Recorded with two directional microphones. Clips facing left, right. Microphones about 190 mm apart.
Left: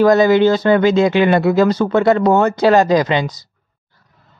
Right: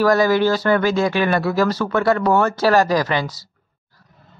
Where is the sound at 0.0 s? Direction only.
20° left (ahead or behind).